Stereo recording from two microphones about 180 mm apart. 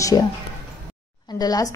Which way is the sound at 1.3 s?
20° left (ahead or behind).